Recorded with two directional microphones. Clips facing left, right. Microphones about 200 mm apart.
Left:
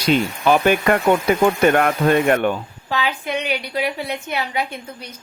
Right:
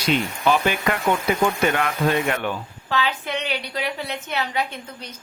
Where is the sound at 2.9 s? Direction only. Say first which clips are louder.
Left 2 dB; 10° left (ahead or behind).